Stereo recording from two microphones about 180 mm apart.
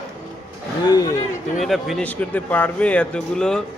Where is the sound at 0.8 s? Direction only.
25° left (ahead or behind).